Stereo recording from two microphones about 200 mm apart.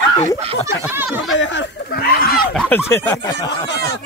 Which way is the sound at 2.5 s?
10° left (ahead or behind).